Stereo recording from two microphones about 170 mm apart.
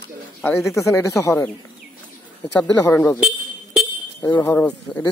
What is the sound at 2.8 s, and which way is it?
Speech, 20° left (ahead or behind).